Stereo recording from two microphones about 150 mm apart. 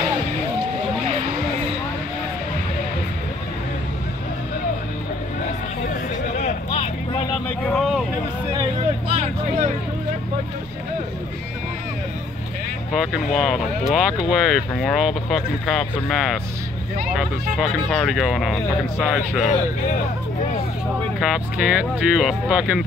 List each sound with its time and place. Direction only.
6.3 s vehicle: 45° left (ahead or behind)
7.4 s vehicle: 5° left (ahead or behind)
9.1 s vehicle: 45° right (ahead or behind)
12.9 s speech: centre (ahead or behind)
21.2 s speech: 5° right (ahead or behind)